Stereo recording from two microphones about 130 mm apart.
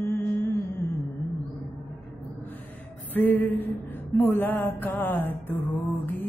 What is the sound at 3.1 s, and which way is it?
Mantra, 15° left (ahead or behind).